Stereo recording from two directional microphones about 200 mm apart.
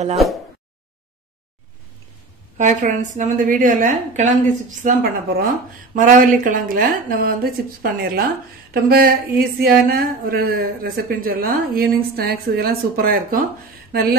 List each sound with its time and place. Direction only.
2.5 s a woman's voice: 35° right (ahead or behind)